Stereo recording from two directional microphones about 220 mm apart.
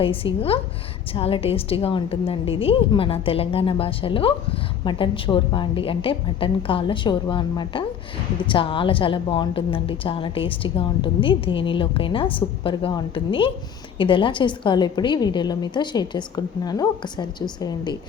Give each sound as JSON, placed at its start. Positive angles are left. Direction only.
{"t": 0.0, "sound": "a woman's voice", "side_deg": 25}